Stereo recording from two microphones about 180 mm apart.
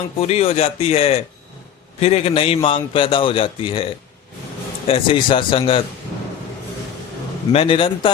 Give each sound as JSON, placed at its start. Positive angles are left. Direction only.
{"t": 0.2, "sound": "a man's voice", "side_deg": 35}
{"t": 4.9, "sound": "speech", "side_deg": 30}
{"t": 7.5, "sound": "a man's voice", "side_deg": 30}